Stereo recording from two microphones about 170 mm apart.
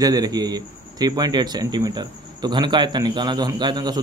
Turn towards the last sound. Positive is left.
turn(degrees=-25)  # may be behind; listen again after turning